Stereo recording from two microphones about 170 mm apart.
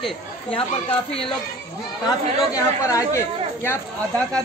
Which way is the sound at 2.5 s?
20° left (ahead or behind).